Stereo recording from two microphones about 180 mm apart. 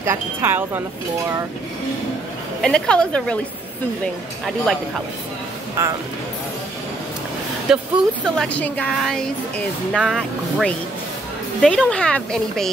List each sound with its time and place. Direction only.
0.0 s speech: 15° right (ahead or behind)
2.6 s speech: 5° left (ahead or behind)
5.8 s speech: 15° right (ahead or behind)
7.7 s speech: 5° right (ahead or behind)
8.5 s speech: 10° left (ahead or behind)